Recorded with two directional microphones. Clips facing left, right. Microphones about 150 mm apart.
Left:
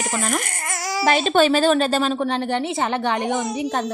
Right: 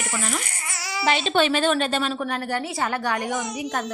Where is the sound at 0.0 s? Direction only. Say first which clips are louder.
Left 5 dB; 45° left (ahead or behind).